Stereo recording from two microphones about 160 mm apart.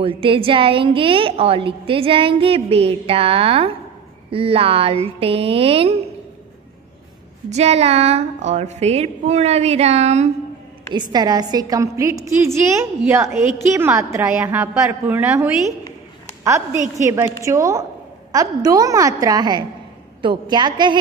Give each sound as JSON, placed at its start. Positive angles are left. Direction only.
{"t": 0.0, "sound": "a woman's voice", "side_deg": -35}
{"t": 7.4, "sound": "a woman's voice", "side_deg": -45}
{"t": 10.9, "sound": "a woman's voice", "side_deg": -25}